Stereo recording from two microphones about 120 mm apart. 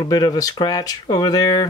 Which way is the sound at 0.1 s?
35° left (ahead or behind).